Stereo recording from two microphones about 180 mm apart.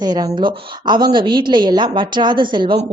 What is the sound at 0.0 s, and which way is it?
Speech, 25° right (ahead or behind).